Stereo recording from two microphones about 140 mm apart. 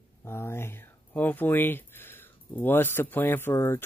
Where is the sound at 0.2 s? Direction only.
20° left (ahead or behind).